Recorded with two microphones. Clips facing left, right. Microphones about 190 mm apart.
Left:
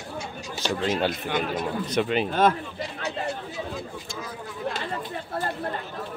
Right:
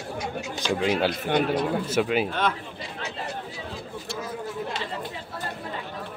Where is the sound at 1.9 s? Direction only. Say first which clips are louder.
Left 1 dB; 5° right (ahead or behind).